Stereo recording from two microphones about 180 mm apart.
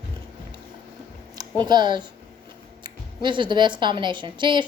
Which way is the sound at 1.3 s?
25° right (ahead or behind).